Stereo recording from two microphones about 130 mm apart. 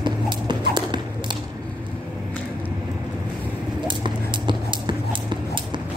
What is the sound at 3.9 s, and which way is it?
Clip-clop, 40° right (ahead or behind).